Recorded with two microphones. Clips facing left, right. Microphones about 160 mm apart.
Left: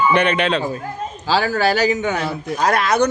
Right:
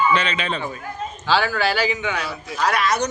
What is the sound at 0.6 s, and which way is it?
A man's voice, 35° left (ahead or behind).